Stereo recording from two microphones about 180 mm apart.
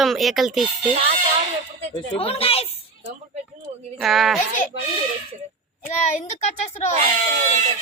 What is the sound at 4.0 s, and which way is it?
Speech, centre (ahead or behind).